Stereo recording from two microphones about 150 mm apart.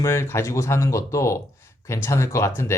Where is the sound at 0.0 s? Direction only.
15° left (ahead or behind).